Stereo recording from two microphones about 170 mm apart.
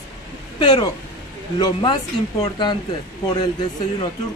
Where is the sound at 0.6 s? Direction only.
25° left (ahead or behind).